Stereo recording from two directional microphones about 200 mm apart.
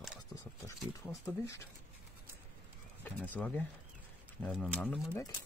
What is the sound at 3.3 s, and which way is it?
Speech, 10° left (ahead or behind).